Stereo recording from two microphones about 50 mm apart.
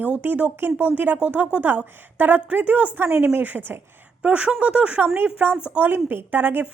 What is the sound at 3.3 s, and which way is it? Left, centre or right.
A woman's voice, right.